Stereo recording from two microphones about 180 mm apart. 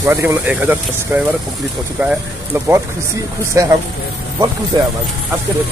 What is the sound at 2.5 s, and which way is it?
Speech, 15° right (ahead or behind).